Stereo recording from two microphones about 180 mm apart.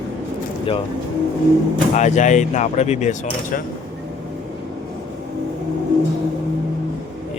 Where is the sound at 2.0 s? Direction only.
40° left (ahead or behind).